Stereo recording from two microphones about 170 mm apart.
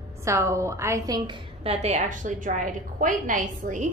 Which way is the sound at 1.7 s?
40° right (ahead or behind).